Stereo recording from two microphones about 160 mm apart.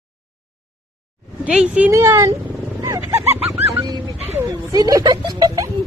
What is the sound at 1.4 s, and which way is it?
Speech, 5° right (ahead or behind).